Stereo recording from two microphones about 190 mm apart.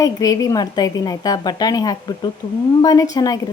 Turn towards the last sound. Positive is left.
turn(degrees=20)  # may be behind; listen again after turning